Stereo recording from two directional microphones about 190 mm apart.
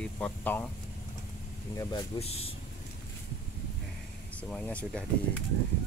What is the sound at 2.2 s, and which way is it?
Speech, 30° left (ahead or behind).